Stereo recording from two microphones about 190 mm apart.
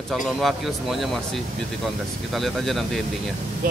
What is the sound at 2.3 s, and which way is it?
Speech, centre (ahead or behind).